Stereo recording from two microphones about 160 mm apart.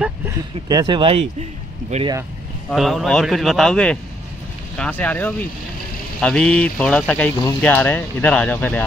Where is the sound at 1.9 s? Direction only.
45° right (ahead or behind).